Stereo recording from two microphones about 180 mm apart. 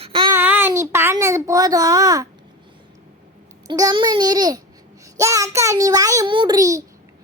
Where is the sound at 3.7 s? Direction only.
20° right (ahead or behind).